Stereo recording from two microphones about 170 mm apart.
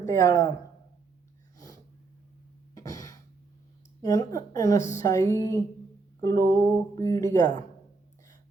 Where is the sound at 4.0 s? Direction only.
20° left (ahead or behind).